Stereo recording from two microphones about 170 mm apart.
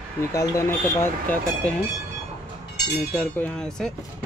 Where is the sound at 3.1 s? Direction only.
10° left (ahead or behind).